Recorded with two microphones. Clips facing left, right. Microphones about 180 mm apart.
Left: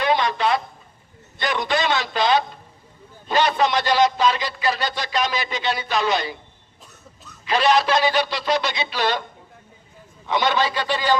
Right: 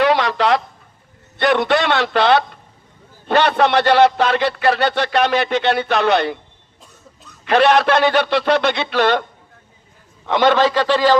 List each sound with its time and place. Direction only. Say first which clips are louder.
0.0 s a sound: right 5 dB; 75° right (ahead or behind)
1.4 s a man's voice: right 7 dB; 60° right (ahead or behind)
7.4 s a man's voice: right 5 dB; 60° right (ahead or behind)
10.2 s a man's voice: right 7 dB; 60° right (ahead or behind); by 11.2 s 90° right